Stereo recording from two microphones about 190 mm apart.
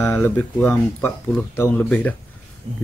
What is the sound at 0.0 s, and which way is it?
Speech, 5° left (ahead or behind).